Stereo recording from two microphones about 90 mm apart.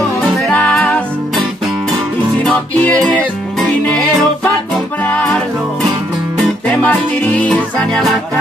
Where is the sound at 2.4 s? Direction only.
15° left (ahead or behind).